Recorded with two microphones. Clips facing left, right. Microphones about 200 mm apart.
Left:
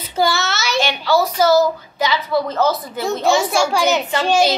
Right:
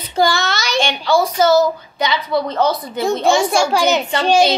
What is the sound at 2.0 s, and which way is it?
A child's voice, 5° left (ahead or behind).